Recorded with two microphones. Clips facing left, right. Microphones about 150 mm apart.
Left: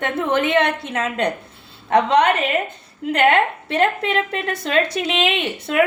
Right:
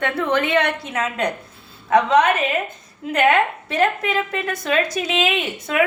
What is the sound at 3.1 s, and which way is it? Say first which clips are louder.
Speech: left 1 dB; 30° left (ahead or behind).